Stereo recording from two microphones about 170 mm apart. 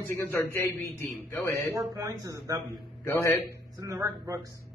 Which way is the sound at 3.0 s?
15° left (ahead or behind).